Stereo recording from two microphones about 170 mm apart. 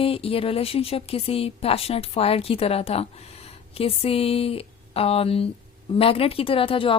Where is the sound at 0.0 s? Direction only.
35° left (ahead or behind).